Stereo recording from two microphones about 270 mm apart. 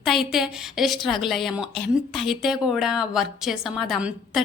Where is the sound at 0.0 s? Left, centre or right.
Centre.